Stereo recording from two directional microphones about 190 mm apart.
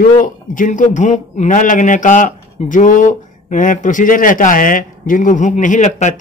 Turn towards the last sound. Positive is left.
turn(degrees=40)  # may be behind; listen again after turning